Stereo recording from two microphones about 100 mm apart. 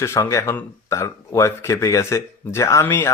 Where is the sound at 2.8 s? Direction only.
20° left (ahead or behind).